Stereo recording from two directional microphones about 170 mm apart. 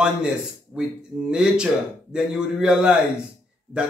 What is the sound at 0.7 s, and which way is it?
A man's voice, 5° right (ahead or behind).